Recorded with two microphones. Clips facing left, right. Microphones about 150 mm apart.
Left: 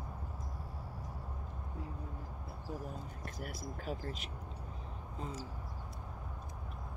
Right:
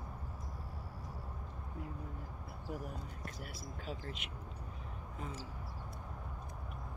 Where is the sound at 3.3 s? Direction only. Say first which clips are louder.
Left 4 dB; 45° left (ahead or behind).